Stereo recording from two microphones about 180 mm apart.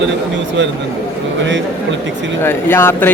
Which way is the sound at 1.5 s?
90° right.